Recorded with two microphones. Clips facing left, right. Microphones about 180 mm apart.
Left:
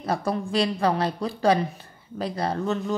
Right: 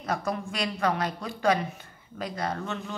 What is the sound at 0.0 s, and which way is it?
Speech, 30° left (ahead or behind).